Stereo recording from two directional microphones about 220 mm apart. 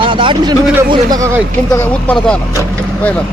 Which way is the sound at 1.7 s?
5° left (ahead or behind).